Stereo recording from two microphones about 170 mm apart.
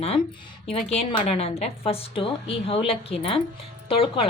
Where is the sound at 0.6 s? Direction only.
35° left (ahead or behind).